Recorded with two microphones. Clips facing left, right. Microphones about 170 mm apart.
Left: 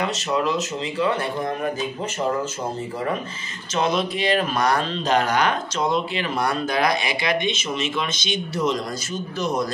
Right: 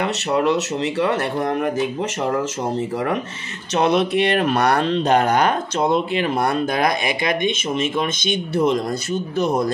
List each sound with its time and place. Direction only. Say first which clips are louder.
0.0 s speech: right 4 dB; 60° right (ahead or behind)
3.7 s speech: right 5 dB; 65° right (ahead or behind)